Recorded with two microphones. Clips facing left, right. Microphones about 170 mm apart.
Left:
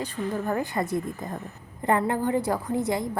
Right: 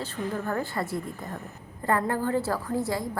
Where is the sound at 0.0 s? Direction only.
15° left (ahead or behind).